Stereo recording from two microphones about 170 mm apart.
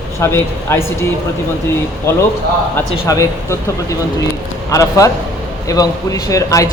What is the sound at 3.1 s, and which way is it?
Speech, 20° left (ahead or behind).